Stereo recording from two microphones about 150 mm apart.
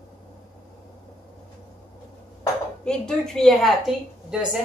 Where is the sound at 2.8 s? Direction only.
5° left (ahead or behind).